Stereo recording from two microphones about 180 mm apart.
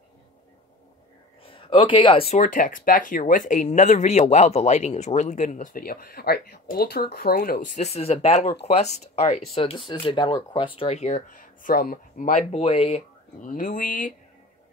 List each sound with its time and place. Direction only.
1.4 s speech: 30° left (ahead or behind)
2.4 s speech: 50° left (ahead or behind)
13.4 s speech: 45° left (ahead or behind)